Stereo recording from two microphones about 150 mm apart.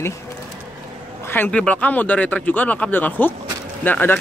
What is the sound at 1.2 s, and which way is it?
Speech, 15° left (ahead or behind).